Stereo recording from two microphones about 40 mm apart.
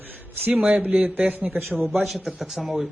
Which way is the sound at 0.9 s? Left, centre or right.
Right.